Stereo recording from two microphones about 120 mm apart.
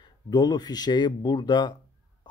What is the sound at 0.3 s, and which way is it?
Speech, 35° left (ahead or behind).